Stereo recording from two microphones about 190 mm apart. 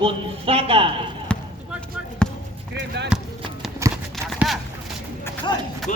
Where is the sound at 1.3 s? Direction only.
5° left (ahead or behind).